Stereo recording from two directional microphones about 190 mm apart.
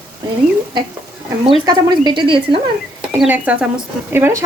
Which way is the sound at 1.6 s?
25° right (ahead or behind).